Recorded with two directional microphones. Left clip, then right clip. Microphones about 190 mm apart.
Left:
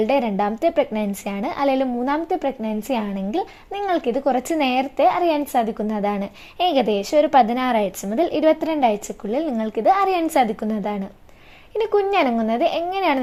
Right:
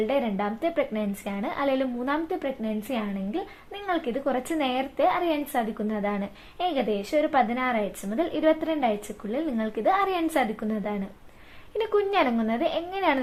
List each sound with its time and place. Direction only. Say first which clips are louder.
0.0 s a woman's voice: left 7 dB; 35° left (ahead or behind)